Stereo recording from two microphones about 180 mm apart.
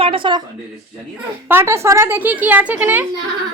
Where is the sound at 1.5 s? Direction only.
10° right (ahead or behind).